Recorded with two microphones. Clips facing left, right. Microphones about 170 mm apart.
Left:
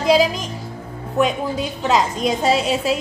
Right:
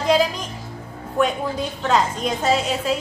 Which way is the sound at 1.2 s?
15° left (ahead or behind).